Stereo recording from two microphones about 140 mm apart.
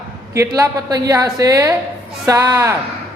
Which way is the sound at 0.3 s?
20° right (ahead or behind).